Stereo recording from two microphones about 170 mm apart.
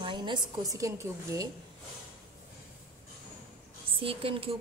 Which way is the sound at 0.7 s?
20° right (ahead or behind).